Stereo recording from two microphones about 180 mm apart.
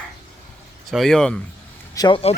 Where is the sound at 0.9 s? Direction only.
Centre (ahead or behind).